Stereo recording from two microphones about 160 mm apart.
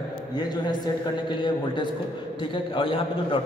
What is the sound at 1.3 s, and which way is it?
A man's voice, 30° left (ahead or behind).